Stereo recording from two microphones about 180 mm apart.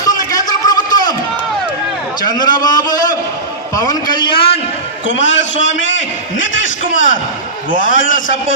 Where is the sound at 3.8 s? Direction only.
20° left (ahead or behind).